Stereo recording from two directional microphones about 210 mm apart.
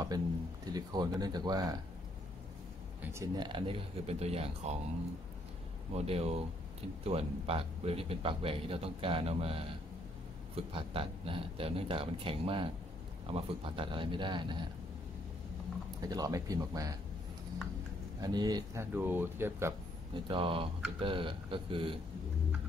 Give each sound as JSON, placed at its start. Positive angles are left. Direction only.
{"t": 0.7, "sound": "speech", "side_deg": -20}
{"t": 3.0, "sound": "speech", "side_deg": -15}
{"t": 5.9, "sound": "speech", "side_deg": -30}
{"t": 16.0, "sound": "speech", "side_deg": -20}
{"t": 18.2, "sound": "speech", "side_deg": -20}
{"t": 20.2, "sound": "speech", "side_deg": -25}